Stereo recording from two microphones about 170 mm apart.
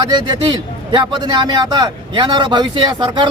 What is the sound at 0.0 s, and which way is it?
A man's voice, 25° right (ahead or behind).